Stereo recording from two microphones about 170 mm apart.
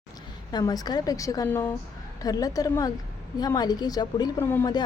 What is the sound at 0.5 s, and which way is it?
A woman's voice, 20° left (ahead or behind).